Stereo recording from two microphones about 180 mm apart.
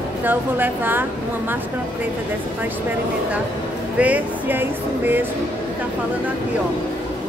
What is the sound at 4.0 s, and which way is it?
Speech, 10° right (ahead or behind).